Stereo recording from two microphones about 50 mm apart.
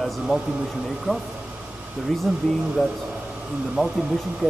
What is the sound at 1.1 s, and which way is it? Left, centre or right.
Speech, centre.